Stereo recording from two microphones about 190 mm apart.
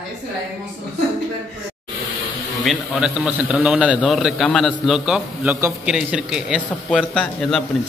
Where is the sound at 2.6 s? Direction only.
Centre (ahead or behind).